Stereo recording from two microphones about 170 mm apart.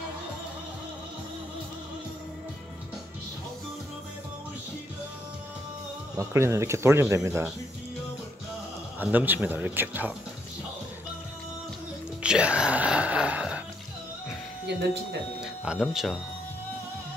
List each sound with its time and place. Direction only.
6.1 s speech: 15° right (ahead or behind)
9.0 s speech: 10° right (ahead or behind)
12.2 s speech: 5° right (ahead or behind)
15.4 s speech: 5° right (ahead or behind)